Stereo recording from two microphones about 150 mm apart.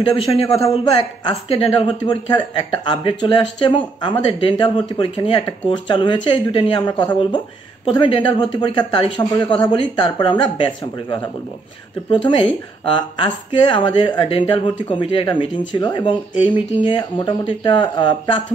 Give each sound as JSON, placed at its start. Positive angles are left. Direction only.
{"t": 0.4, "sound": "speech", "side_deg": 40}